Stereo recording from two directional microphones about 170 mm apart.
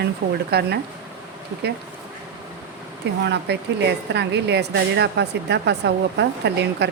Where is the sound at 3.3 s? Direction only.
90° right.